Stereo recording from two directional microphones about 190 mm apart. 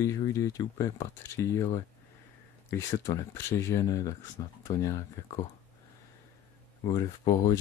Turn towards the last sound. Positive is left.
turn(degrees=20)  # may be behind; listen again after turning